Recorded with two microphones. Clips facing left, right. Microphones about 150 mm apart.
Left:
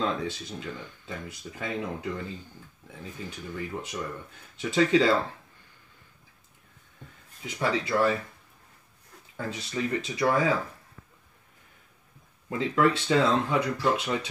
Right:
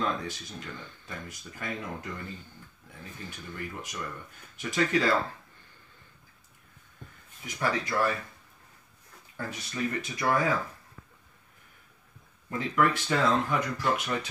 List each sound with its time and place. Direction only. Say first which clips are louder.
0.0 s speech: left 2 dB; 20° left (ahead or behind)
7.4 s speech: left 2 dB; 25° left (ahead or behind)
9.5 s speech: left 3 dB; 25° left (ahead or behind)
12.4 s speech: left 3 dB; 20° left (ahead or behind)